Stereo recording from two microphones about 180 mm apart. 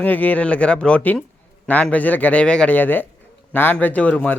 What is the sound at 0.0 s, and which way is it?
Speech, 10° left (ahead or behind).